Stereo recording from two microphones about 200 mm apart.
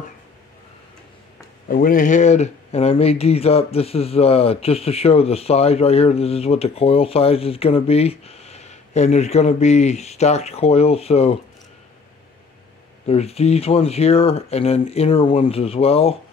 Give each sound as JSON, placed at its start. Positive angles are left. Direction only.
{"t": 1.7, "sound": "speech", "side_deg": 45}
{"t": 13.0, "sound": "speech", "side_deg": 30}